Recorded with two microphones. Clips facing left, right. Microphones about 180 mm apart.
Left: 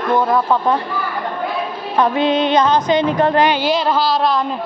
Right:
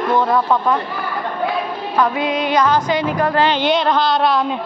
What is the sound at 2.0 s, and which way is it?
Music, 25° left (ahead or behind).